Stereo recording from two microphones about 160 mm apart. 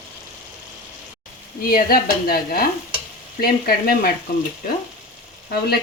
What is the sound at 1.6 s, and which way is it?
Speech, 65° left (ahead or behind).